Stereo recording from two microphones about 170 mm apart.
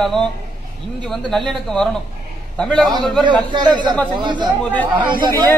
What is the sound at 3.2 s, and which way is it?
A man's voice, 25° right (ahead or behind).